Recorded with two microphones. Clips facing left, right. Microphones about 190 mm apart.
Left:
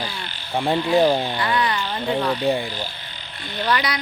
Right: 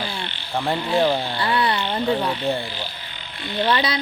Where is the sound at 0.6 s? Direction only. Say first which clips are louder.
Left 3 dB; 15° left (ahead or behind).